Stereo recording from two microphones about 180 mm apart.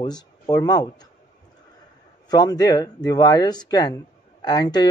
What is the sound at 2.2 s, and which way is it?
Speech, 20° left (ahead or behind).